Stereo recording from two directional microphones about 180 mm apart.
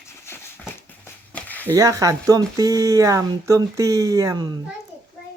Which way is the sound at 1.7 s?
20° right (ahead or behind).